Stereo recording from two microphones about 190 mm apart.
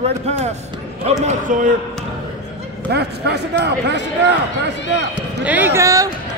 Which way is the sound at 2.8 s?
60° right (ahead or behind).